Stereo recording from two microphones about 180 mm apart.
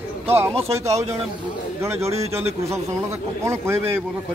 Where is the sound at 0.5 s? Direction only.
35° right (ahead or behind).